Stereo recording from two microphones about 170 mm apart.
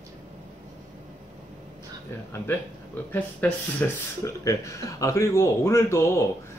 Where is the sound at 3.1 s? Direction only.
10° left (ahead or behind).